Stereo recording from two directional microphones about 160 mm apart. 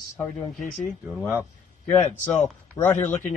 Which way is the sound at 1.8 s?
45° left (ahead or behind).